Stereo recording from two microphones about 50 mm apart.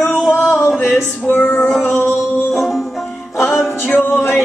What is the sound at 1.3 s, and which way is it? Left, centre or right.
Music, left.